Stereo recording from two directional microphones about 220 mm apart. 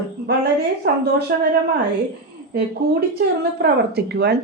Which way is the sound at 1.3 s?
40° right (ahead or behind).